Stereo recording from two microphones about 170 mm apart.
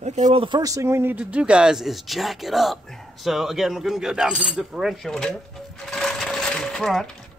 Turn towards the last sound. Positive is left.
turn(degrees=0)  # may be behind; listen again after turning